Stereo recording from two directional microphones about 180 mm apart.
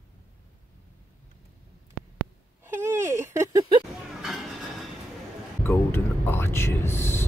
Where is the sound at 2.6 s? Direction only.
15° right (ahead or behind).